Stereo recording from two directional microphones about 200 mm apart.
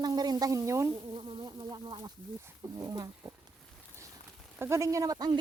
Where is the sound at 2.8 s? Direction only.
15° right (ahead or behind).